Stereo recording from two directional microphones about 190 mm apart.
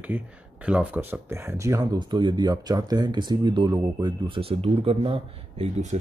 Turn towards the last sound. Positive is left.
turn(degrees=-35)  # may be behind; listen again after turning